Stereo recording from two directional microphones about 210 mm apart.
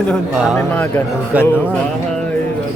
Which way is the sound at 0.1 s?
Centre (ahead or behind).